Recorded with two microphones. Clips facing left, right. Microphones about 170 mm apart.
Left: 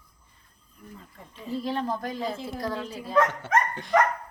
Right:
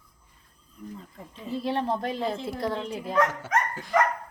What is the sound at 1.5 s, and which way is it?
Speech, 25° right (ahead or behind).